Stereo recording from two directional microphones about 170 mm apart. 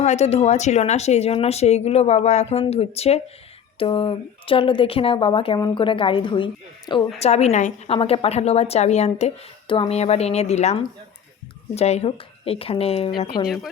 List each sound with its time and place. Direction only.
0.0 s a woman's voice: 40° left (ahead or behind); by 13.5 s 25° left (ahead or behind)